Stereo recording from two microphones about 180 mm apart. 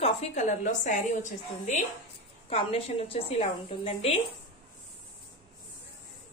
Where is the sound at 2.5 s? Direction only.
35° left (ahead or behind).